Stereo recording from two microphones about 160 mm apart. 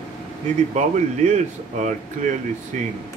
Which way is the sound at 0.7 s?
45° right (ahead or behind).